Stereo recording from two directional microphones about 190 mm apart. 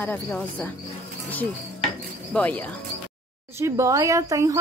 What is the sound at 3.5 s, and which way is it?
Speech, 15° right (ahead or behind).